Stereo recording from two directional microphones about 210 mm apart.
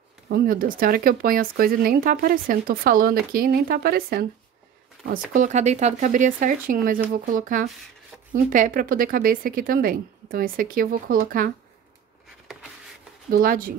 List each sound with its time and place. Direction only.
0.3 s speech: 45° right (ahead or behind)
5.3 s speech: 35° right (ahead or behind)
12.5 s a sound: centre (ahead or behind)
13.3 s speech: 45° right (ahead or behind)